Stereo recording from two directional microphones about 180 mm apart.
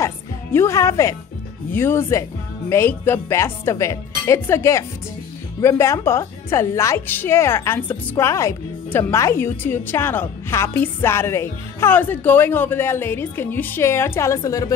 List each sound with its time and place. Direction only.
0.0 s music: 15° left (ahead or behind)
1.7 s a woman's voice: 10° left (ahead or behind)